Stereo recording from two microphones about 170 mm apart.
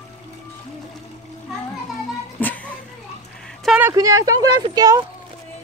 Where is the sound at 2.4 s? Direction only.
10° left (ahead or behind).